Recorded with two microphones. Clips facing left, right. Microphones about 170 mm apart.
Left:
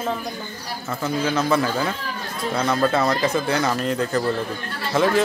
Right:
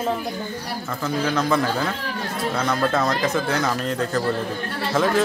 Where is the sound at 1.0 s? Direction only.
5° left (ahead or behind).